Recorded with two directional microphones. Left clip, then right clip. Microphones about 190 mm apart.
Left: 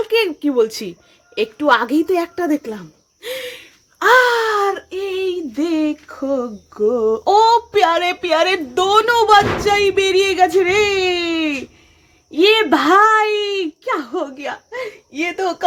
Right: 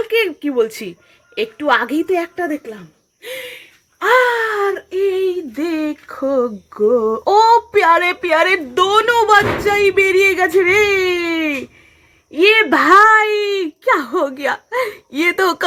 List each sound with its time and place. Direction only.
0.0 s a woman's voice: 10° left (ahead or behind); by 3.2 s 30° left (ahead or behind)
4.0 s wail: 20° left (ahead or behind)
4.9 s speech: centre (ahead or behind)
13.8 s speech: 15° right (ahead or behind)